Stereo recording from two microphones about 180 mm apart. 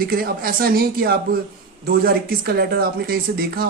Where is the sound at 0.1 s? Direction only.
55° right (ahead or behind).